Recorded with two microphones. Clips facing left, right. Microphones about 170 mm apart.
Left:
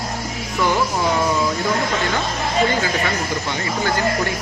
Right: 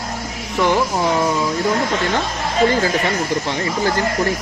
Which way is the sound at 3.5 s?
30° right (ahead or behind).